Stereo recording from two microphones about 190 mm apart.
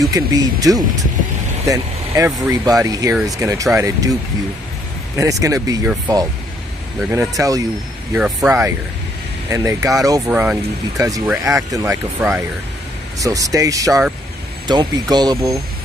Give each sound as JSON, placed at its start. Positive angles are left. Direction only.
{"t": 0.1, "sound": "speech", "side_deg": -20}
{"t": 8.1, "sound": "speech", "side_deg": -5}